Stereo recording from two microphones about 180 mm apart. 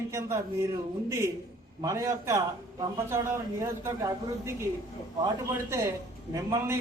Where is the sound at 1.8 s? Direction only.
15° right (ahead or behind).